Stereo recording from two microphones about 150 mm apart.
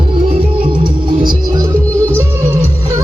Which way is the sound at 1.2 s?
20° right (ahead or behind).